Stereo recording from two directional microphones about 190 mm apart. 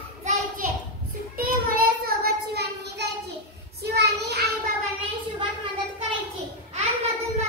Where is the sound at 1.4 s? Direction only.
50° right (ahead or behind).